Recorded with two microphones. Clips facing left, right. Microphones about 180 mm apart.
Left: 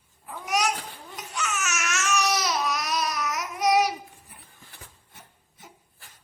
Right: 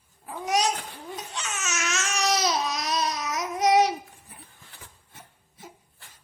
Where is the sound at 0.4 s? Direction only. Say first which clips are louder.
Right 1 dB; 30° right (ahead or behind).